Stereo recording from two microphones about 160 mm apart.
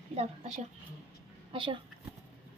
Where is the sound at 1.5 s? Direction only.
30° right (ahead or behind).